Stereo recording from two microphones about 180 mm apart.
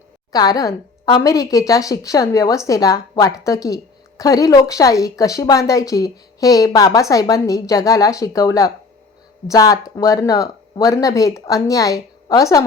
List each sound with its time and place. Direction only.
0.3 s a woman's voice: 20° left (ahead or behind)